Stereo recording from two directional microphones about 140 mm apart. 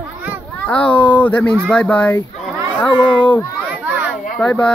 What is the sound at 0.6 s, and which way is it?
Speech, 10° left (ahead or behind).